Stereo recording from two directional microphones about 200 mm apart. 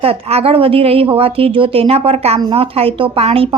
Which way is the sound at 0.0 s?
30° right (ahead or behind).